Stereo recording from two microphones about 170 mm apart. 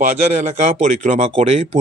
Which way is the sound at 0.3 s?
45° right (ahead or behind).